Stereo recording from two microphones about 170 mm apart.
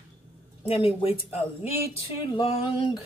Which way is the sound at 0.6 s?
35° left (ahead or behind).